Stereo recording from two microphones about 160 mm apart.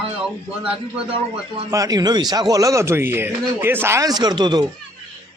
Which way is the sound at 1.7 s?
20° right (ahead or behind).